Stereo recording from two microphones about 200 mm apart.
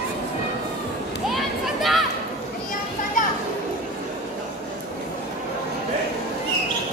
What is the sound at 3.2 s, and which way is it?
Children playing, 40° left (ahead or behind).